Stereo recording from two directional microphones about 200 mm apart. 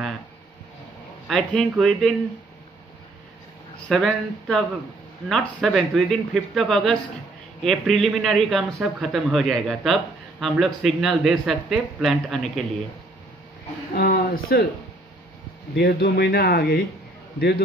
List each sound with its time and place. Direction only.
1.2 s speech: centre (ahead or behind)
3.9 s speech: 5° left (ahead or behind)
13.9 s speech: 45° left (ahead or behind)
15.7 s speech: 55° left (ahead or behind)